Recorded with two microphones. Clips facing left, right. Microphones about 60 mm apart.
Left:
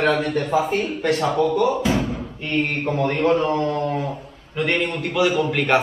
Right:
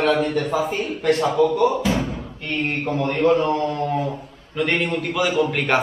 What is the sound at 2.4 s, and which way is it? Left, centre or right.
A man's voice, left.